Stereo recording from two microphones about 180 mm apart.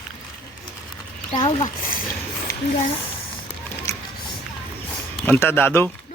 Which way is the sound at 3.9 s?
15° left (ahead or behind).